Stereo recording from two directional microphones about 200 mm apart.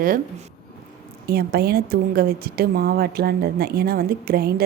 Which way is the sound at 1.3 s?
50° right (ahead or behind).